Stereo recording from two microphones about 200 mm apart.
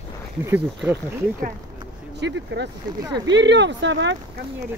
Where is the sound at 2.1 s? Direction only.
60° right (ahead or behind).